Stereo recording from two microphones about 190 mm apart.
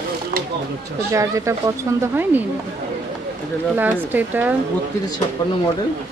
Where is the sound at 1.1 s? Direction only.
15° right (ahead or behind).